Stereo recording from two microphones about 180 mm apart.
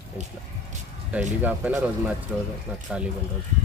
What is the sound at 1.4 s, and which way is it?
Speech, 10° right (ahead or behind).